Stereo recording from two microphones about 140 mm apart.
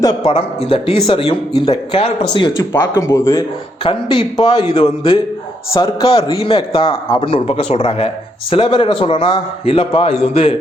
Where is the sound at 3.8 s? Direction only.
40° left (ahead or behind).